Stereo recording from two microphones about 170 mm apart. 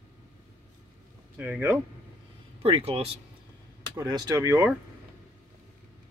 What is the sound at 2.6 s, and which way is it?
Speech, 35° right (ahead or behind).